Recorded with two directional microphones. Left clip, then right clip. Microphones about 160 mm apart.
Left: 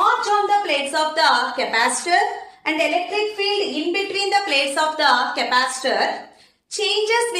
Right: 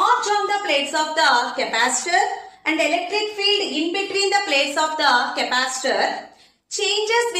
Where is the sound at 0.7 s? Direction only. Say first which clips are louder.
Even; 15° left (ahead or behind).